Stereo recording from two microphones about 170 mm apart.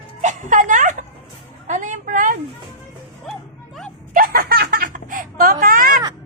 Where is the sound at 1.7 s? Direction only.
45° right (ahead or behind).